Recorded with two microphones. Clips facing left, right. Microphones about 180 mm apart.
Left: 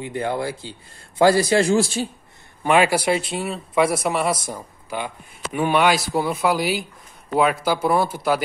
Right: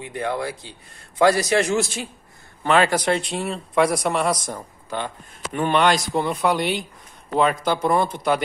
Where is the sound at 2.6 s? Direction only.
10° left (ahead or behind).